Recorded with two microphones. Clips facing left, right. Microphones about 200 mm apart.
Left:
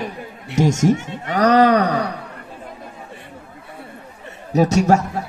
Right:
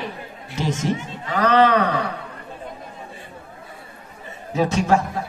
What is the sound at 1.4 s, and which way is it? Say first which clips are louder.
Groan: left 3 dB; 40° left (ahead or behind).